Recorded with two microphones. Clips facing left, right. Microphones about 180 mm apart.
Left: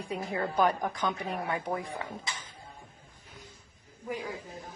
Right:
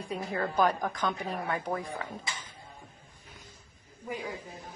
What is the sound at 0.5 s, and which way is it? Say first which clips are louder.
A woman's voice: even; 10° left (ahead or behind).